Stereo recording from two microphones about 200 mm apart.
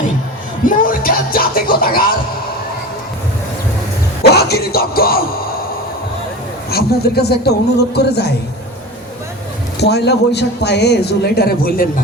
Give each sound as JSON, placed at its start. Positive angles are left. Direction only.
{"t": 0.6, "sound": "speech", "side_deg": 45}
{"t": 4.2, "sound": "a sound", "side_deg": 55}
{"t": 6.7, "sound": "a man's voice", "side_deg": 50}
{"t": 9.8, "sound": "a man's voice", "side_deg": 55}